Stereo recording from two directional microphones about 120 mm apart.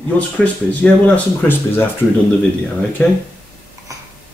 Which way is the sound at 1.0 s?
15° left (ahead or behind).